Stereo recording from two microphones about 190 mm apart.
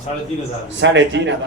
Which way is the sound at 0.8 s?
70° right (ahead or behind).